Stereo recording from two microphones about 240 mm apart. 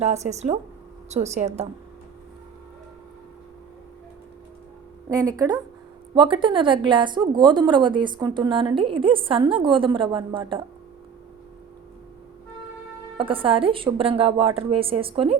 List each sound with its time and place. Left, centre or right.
0.0 s a woman's voice: right
5.0 s a woman's voice: centre
13.1 s a woman's voice: right